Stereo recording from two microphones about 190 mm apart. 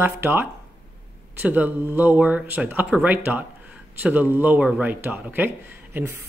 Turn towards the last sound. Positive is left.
turn(degrees=-10)  # may be behind; listen again after turning